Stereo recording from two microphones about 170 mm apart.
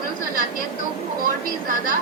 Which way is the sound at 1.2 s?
55° right (ahead or behind).